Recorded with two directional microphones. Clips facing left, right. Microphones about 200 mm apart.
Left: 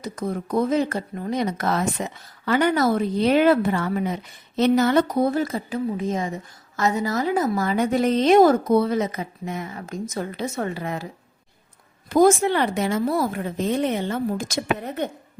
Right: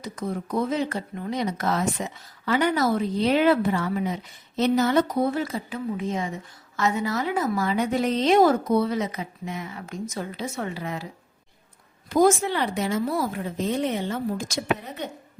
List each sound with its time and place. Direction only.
0.0 s speech: 45° left (ahead or behind); by 5.0 s 60° left (ahead or behind)
5.3 s speech: 45° left (ahead or behind)
12.0 s a woman's voice: 50° left (ahead or behind)